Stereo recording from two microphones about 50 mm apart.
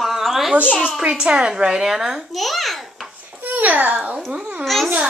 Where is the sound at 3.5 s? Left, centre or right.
Right.